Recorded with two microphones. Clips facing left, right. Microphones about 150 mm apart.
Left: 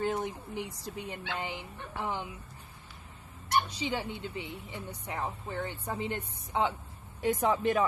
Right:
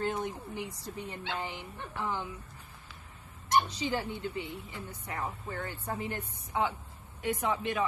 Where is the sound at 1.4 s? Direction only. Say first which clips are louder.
Left 1 dB; 20° left (ahead or behind).